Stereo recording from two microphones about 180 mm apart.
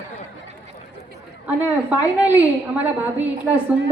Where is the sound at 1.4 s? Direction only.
10° right (ahead or behind).